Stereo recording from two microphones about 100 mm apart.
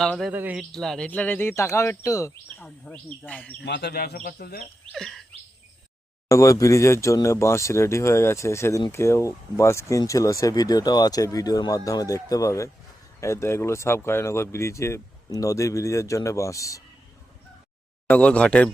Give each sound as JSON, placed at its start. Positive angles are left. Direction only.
{"t": 0.0, "sound": "bird", "side_deg": 5}
{"t": 0.3, "sound": "a man's voice", "side_deg": -15}
{"t": 0.7, "sound": "speech", "side_deg": 5}
{"t": 2.6, "sound": "speech", "side_deg": 10}
{"t": 4.9, "sound": "bird", "side_deg": 5}
{"t": 6.2, "sound": "speech", "side_deg": 30}
{"t": 18.1, "sound": "speech", "side_deg": 15}